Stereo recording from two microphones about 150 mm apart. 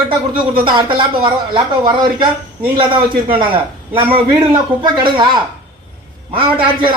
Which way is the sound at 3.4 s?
35° right (ahead or behind).